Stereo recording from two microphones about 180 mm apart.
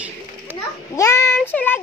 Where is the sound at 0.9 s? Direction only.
15° left (ahead or behind).